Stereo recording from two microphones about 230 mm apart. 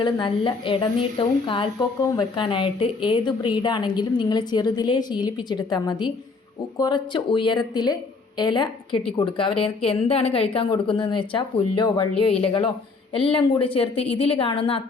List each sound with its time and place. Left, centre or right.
0.0 s a woman's voice: left